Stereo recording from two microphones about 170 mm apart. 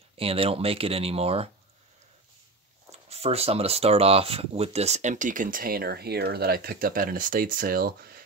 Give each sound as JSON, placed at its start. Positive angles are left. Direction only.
{"t": 0.2, "sound": "speech", "side_deg": -35}
{"t": 2.9, "sound": "speech", "side_deg": -40}